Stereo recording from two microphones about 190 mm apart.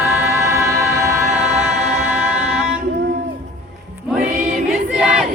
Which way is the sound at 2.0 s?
5° right (ahead or behind).